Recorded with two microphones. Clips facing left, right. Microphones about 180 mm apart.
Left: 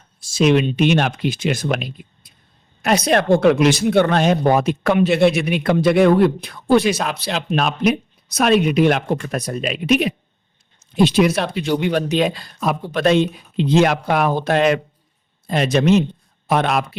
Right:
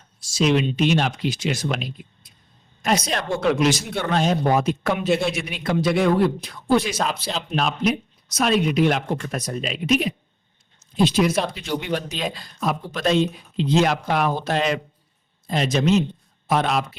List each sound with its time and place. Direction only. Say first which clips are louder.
0.3 s speech: left 4 dB; 55° left (ahead or behind)